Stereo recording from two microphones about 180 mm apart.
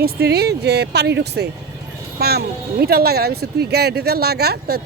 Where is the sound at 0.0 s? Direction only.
60° right (ahead or behind).